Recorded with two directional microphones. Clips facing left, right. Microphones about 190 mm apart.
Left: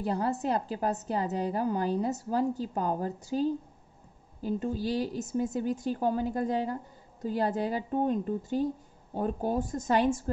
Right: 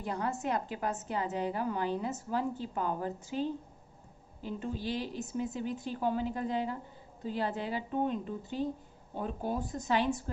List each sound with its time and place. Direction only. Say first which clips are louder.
0.0 s a woman's voice: left 5 dB; 35° left (ahead or behind)